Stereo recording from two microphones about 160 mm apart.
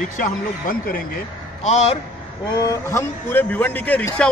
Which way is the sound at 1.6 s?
40° left (ahead or behind).